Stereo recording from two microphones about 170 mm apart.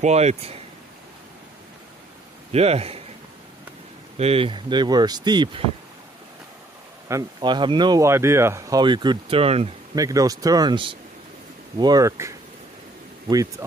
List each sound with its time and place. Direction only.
0.0 s speech: 40° right (ahead or behind)
2.5 s speech: 35° right (ahead or behind)
4.2 s speech: 35° right (ahead or behind)
7.1 s speech: 20° right (ahead or behind)
9.9 s speech: 20° right (ahead or behind)